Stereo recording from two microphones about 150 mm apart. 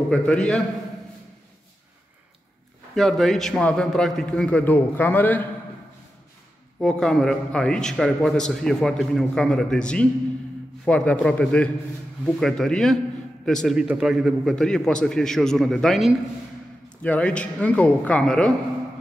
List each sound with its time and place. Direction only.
0.1 s speech: 5° left (ahead or behind)
2.9 s a man's voice: centre (ahead or behind)
6.8 s a man's voice: 5° left (ahead or behind)